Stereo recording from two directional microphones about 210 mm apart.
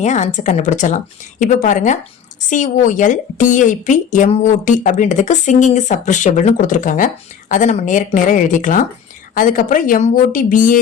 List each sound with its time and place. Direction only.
0.0 s speech: 35° left (ahead or behind)